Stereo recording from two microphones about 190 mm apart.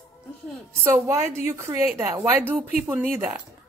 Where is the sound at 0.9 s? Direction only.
15° right (ahead or behind).